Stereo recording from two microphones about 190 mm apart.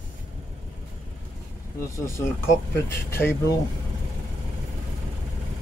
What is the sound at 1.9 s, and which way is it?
Speech, 15° left (ahead or behind).